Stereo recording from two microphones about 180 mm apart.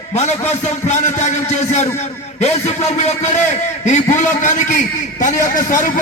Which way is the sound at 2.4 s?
40° left (ahead or behind).